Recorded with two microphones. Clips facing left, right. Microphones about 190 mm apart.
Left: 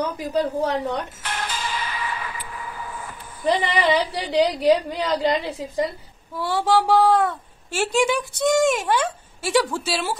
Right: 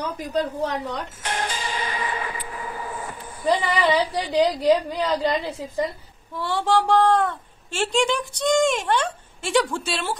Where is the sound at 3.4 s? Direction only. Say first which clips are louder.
Even; 20° left (ahead or behind).